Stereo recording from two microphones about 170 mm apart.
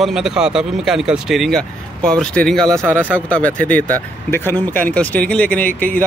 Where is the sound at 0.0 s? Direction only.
Centre (ahead or behind).